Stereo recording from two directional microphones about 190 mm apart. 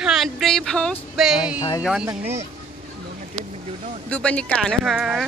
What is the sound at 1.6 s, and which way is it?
Speech, 20° left (ahead or behind).